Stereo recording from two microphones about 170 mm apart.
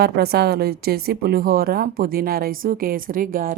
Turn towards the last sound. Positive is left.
turn(degrees=-55)  # may be behind; listen again after turning